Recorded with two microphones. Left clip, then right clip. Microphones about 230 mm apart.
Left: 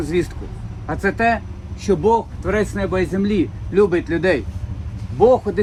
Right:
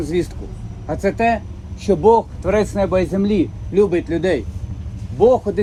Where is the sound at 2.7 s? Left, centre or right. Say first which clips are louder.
Right 5 dB; right.